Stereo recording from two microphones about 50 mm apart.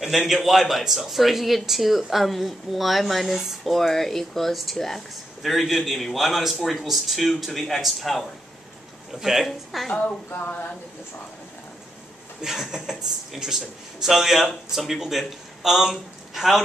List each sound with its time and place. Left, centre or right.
0.3 s speech: centre
10.3 s speech: left
12.4 s speech: centre